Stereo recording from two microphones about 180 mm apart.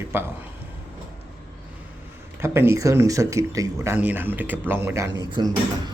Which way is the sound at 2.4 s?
15° right (ahead or behind).